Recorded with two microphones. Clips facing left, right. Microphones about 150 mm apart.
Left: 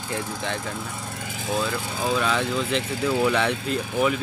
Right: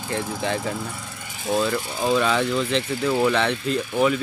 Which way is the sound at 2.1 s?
Centre (ahead or behind).